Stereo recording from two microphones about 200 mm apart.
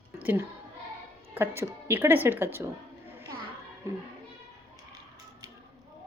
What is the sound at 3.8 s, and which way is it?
Speech, 15° right (ahead or behind).